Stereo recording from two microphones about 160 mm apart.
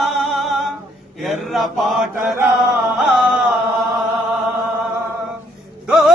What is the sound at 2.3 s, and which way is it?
Chant, 15° right (ahead or behind).